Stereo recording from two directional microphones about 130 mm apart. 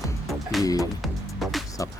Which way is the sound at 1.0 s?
Centre (ahead or behind).